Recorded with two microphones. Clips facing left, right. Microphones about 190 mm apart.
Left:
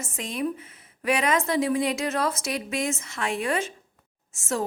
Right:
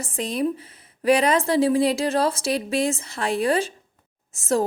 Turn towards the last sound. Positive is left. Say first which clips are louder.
# right 6 dB
turn(degrees=-35)  # may be behind; listen again after turning